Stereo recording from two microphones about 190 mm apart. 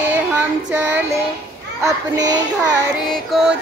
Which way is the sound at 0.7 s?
10° right (ahead or behind).